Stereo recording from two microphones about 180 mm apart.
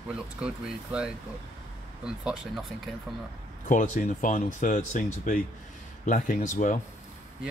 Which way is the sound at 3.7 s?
45° left (ahead or behind).